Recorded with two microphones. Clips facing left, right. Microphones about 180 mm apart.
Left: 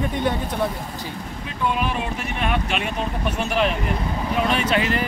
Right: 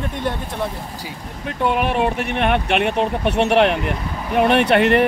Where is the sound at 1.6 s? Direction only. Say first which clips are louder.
Right 6 dB; 60° right (ahead or behind).